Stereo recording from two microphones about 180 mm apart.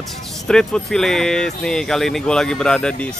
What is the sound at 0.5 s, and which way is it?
Speech, 5° left (ahead or behind).